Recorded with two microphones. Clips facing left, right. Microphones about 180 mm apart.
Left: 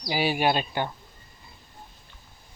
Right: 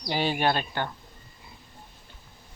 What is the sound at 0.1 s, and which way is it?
Speech, 10° left (ahead or behind).